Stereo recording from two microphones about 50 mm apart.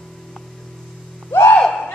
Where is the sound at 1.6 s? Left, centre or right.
Centre.